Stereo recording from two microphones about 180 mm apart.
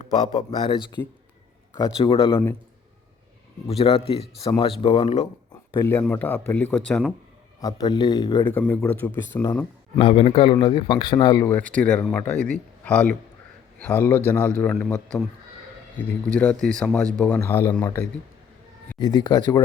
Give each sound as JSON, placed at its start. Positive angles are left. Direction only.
{"t": 0.0, "sound": "speech", "side_deg": 40}
{"t": 0.5, "sound": "a man's voice", "side_deg": 25}
{"t": 3.7, "sound": "speech", "side_deg": 35}
{"t": 5.8, "sound": "speech", "side_deg": 15}
{"t": 7.6, "sound": "a man's voice", "side_deg": 20}
{"t": 8.4, "sound": "speech", "side_deg": 10}
{"t": 10.0, "sound": "a man's voice", "side_deg": 30}
{"t": 11.4, "sound": "a man's voice", "side_deg": 10}
{"t": 18.9, "sound": "a man's voice", "side_deg": 25}